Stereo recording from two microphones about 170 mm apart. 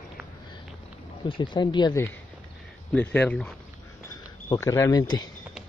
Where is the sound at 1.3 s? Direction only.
25° left (ahead or behind).